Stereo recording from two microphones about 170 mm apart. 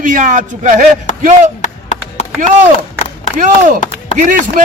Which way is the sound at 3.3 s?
45° right (ahead or behind).